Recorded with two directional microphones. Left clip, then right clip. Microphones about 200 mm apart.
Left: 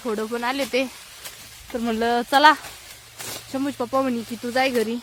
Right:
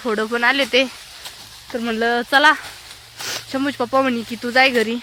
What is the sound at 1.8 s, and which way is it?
Speech, 15° left (ahead or behind).